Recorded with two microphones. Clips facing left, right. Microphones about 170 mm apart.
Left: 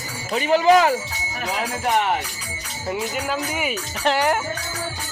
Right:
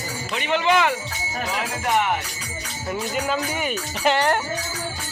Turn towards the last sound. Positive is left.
turn(degrees=5)  # may be behind; listen again after turning